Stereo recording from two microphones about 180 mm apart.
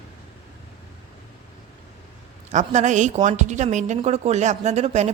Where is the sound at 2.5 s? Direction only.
40° right (ahead or behind).